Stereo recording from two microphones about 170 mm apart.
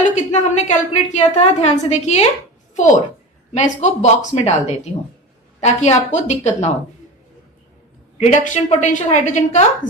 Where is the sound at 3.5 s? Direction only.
45° left (ahead or behind).